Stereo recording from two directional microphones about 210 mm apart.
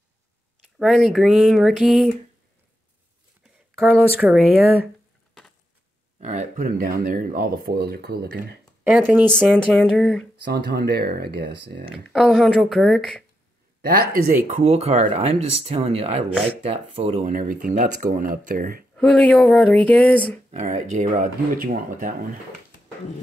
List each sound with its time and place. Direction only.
0.7 s speech: centre (ahead or behind)
3.7 s speech: 5° right (ahead or behind)
6.2 s speech: 35° right (ahead or behind)
8.8 s speech: 5° right (ahead or behind)
10.4 s speech: 50° right (ahead or behind)
12.1 s speech: centre (ahead or behind)
13.7 s speech: 45° right (ahead or behind)
18.9 s speech: 5° left (ahead or behind)
20.5 s speech: 35° right (ahead or behind)